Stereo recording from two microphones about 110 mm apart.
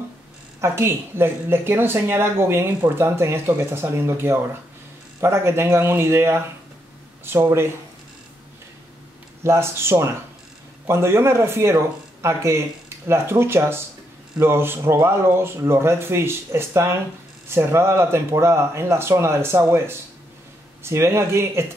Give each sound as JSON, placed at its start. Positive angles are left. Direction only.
{"t": 0.6, "sound": "speech", "side_deg": -20}
{"t": 9.4, "sound": "speech", "side_deg": -25}